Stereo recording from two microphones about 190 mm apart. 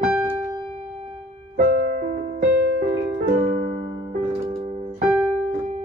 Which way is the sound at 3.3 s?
45° right (ahead or behind).